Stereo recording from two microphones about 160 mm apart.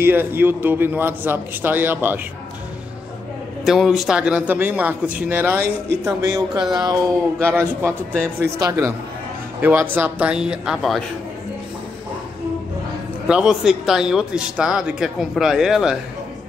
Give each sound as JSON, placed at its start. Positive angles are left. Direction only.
{"t": 0.0, "sound": "a man's voice", "side_deg": -15}
{"t": 3.6, "sound": "a man's voice", "side_deg": 0}
{"t": 6.0, "sound": "music", "side_deg": -20}
{"t": 6.6, "sound": "speech", "side_deg": -5}
{"t": 6.9, "sound": "a man's voice", "side_deg": -15}
{"t": 13.3, "sound": "speech", "side_deg": -5}